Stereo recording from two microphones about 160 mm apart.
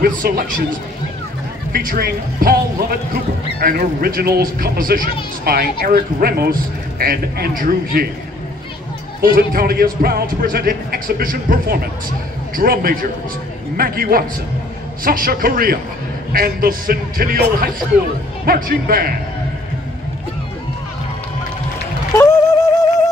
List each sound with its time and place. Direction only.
0.0 s a man's voice: 60° right (ahead or behind)
9.2 s speech: 65° right (ahead or behind)
22.1 s music: 15° left (ahead or behind)